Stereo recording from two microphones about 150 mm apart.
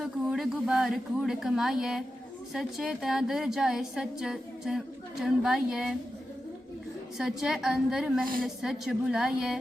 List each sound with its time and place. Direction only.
0.0 s a woman's voice: centre (ahead or behind)
7.2 s a woman's voice: 5° right (ahead or behind)
8.2 s a woman's voice: 70° right (ahead or behind)
8.4 s a woman's voice: centre (ahead or behind)